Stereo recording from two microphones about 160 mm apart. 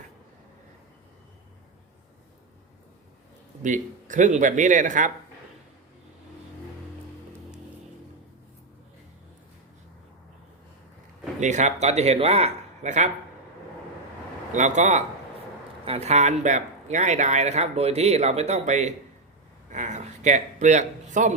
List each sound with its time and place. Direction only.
3.6 s speech: 50° right (ahead or behind)
11.3 s a man's voice: 50° right (ahead or behind)
14.5 s speech: 50° right (ahead or behind)